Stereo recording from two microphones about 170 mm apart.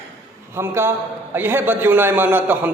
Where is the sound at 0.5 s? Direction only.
15° right (ahead or behind).